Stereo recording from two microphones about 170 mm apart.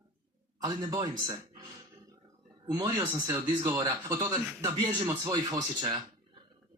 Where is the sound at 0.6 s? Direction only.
20° right (ahead or behind).